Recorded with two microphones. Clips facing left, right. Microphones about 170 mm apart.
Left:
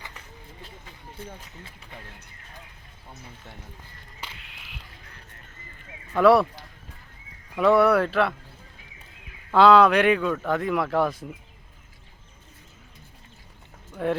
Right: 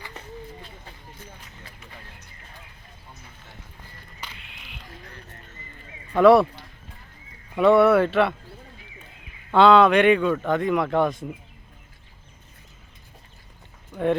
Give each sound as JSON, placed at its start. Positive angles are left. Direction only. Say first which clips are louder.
{"t": 1.1, "sound": "speech", "louder": "left 5 dB", "side_deg": 30}
{"t": 4.4, "sound": "a sound", "louder": "right 1 dB", "side_deg": 0}
{"t": 6.1, "sound": "speech", "louder": "right 3 dB", "side_deg": 0}
{"t": 7.5, "sound": "speech", "louder": "right 3 dB", "side_deg": 0}
{"t": 9.5, "sound": "speech", "louder": "right 1 dB", "side_deg": 0}